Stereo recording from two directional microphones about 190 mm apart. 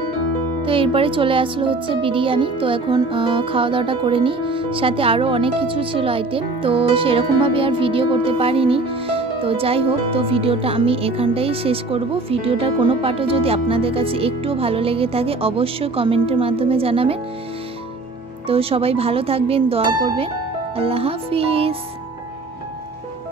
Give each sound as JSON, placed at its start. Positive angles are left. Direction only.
{"t": 0.6, "sound": "speech", "side_deg": -30}
{"t": 18.5, "sound": "speech", "side_deg": -30}